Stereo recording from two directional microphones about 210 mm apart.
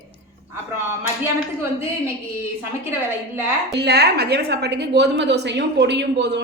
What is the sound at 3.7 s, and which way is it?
A woman's voice, 50° right (ahead or behind).